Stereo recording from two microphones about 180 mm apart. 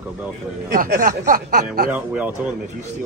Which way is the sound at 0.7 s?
50° right (ahead or behind).